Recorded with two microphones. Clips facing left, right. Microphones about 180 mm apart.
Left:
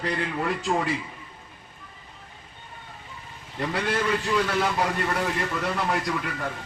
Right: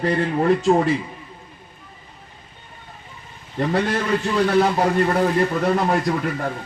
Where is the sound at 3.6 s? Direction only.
35° right (ahead or behind).